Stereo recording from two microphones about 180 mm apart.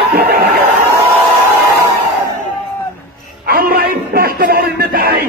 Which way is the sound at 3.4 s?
55° right (ahead or behind).